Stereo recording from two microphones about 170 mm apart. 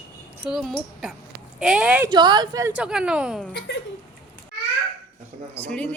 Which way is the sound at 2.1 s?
25° right (ahead or behind).